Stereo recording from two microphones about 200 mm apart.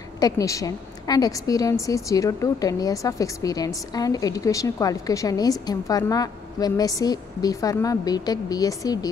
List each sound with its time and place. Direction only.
0.2 s a woman's voice: 15° left (ahead or behind)